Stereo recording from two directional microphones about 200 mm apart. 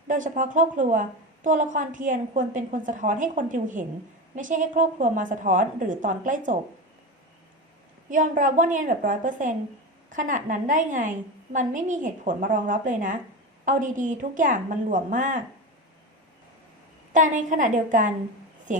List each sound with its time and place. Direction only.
0.1 s a woman's voice: 40° right (ahead or behind)
8.1 s a woman's voice: 40° right (ahead or behind)
17.1 s a woman's voice: 40° right (ahead or behind)